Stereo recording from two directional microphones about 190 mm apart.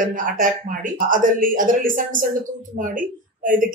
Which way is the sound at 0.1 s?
45° right (ahead or behind).